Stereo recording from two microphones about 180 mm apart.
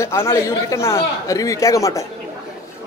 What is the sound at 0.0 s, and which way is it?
A man's voice, 15° left (ahead or behind).